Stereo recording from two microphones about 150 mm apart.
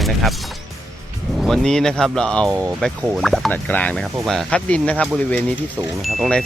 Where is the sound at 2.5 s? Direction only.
15° right (ahead or behind).